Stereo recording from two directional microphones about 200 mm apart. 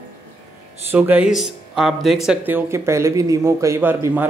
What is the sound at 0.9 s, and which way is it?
A man's voice, 10° right (ahead or behind).